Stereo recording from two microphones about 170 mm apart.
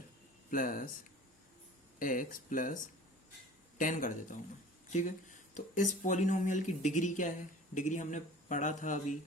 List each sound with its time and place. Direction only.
0.5 s speech: 55° left (ahead or behind)
2.0 s speech: 50° left (ahead or behind)